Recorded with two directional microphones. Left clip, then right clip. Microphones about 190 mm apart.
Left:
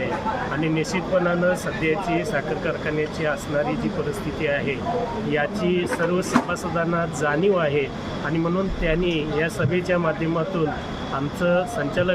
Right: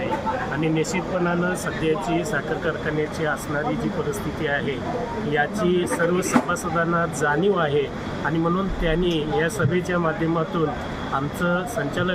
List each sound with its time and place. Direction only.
0.6 s speech: 10° left (ahead or behind)
5.3 s speech: 10° left (ahead or behind)
8.9 s speech: 10° left (ahead or behind)
11.4 s speech: 10° left (ahead or behind)